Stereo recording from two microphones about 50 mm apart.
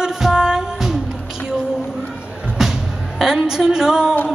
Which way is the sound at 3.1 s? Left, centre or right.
Centre.